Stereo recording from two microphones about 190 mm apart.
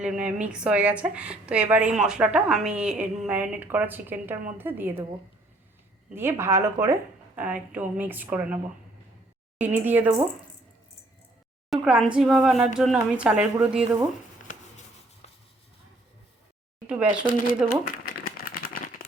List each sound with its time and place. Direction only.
0.0 s a woman's voice: 5° right (ahead or behind)
6.1 s a woman's voice: 10° right (ahead or behind)
9.6 s a woman's voice: 10° right (ahead or behind)
11.7 s speech: 5° right (ahead or behind)
16.8 s a sound: 5° right (ahead or behind)
17.8 s typewriter: 50° left (ahead or behind)